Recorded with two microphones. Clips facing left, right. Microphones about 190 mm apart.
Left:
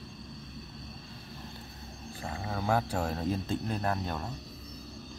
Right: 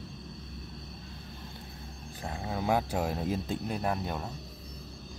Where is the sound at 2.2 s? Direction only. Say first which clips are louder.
Right 1 dB; 15° right (ahead or behind).